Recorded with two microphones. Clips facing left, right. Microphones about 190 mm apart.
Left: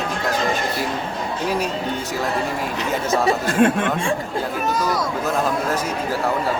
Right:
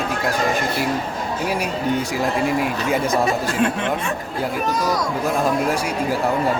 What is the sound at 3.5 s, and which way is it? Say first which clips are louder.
Speech: left 4 dB; 50° left (ahead or behind).